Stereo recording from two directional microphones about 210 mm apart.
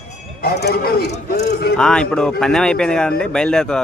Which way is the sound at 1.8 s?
5° left (ahead or behind).